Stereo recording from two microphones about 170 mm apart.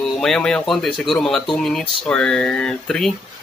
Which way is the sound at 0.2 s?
5° left (ahead or behind).